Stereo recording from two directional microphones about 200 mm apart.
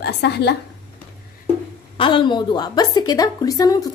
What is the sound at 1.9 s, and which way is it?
A woman's voice, 25° left (ahead or behind).